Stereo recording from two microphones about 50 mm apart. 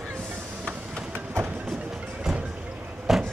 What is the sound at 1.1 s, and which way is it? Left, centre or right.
Train, right.